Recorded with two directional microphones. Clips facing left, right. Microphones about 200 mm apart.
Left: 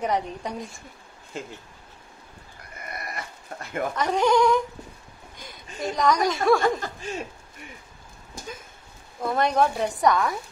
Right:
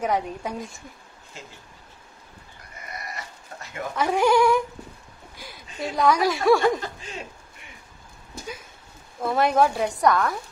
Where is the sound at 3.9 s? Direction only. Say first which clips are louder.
Right 2 dB; 10° right (ahead or behind).